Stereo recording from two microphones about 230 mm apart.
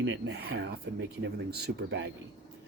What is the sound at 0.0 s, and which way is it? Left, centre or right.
Speech, right.